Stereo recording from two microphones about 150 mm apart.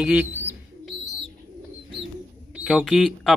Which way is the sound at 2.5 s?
5° right (ahead or behind).